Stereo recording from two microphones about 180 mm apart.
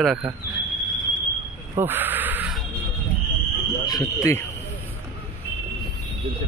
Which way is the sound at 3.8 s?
20° left (ahead or behind).